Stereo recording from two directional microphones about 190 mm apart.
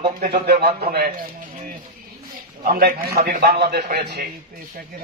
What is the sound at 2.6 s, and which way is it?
A man's voice, 50° right (ahead or behind).